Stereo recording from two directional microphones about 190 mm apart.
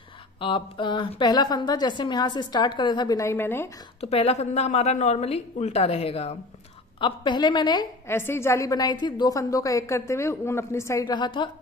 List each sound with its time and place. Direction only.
0.4 s a woman's voice: 25° left (ahead or behind)
4.0 s a woman's voice: 30° left (ahead or behind)